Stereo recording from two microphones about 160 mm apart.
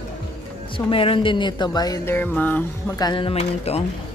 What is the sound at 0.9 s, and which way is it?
Speech, 35° left (ahead or behind).